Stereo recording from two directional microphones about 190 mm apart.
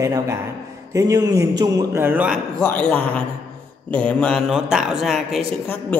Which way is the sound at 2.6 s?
10° left (ahead or behind).